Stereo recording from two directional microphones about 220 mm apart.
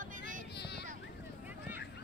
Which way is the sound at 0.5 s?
50° left (ahead or behind).